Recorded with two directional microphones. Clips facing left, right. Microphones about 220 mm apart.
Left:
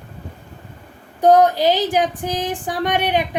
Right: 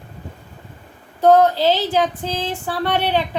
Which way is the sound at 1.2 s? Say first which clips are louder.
Even; 15° left (ahead or behind).